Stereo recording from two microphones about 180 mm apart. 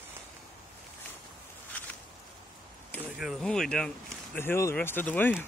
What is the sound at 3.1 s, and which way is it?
Speech, centre (ahead or behind).